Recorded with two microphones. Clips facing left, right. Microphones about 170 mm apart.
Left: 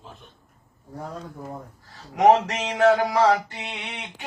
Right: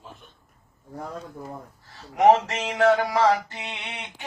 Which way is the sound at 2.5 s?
15° left (ahead or behind).